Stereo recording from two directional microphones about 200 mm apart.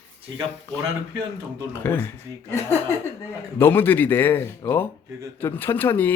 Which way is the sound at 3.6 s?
10° left (ahead or behind).